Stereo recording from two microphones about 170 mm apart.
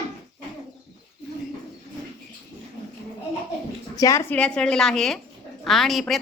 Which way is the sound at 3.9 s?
20° left (ahead or behind).